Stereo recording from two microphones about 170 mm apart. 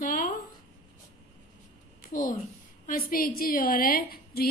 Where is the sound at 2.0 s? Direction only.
55° left (ahead or behind).